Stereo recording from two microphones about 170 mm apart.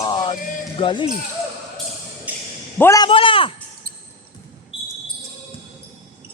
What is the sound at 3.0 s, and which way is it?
Speech, 30° left (ahead or behind).